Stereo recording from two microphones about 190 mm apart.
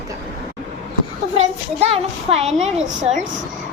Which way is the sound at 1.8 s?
30° right (ahead or behind).